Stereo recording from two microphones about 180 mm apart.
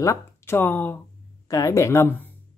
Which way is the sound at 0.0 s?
15° left (ahead or behind).